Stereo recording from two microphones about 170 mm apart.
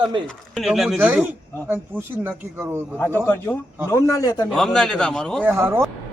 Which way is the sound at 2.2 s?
15° right (ahead or behind).